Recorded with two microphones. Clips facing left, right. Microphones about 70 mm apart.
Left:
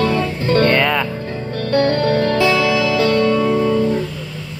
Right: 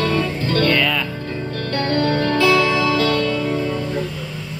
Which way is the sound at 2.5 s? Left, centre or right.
Right.